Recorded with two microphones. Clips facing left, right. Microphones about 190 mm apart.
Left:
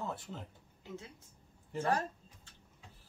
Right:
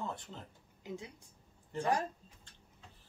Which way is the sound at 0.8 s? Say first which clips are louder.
Right 3 dB; 15° right (ahead or behind).